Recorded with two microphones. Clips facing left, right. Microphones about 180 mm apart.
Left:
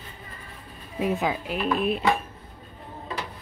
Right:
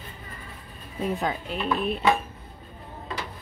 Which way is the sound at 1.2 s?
5° left (ahead or behind).